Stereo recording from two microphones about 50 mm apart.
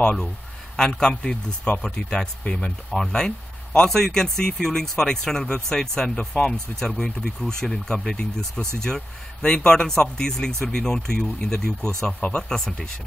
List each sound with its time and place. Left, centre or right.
0.0 s speech: left
2.9 s speech: centre
12.4 s speech: centre